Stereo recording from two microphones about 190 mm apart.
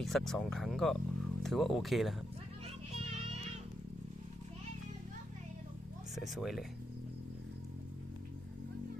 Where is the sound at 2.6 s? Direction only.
30° right (ahead or behind).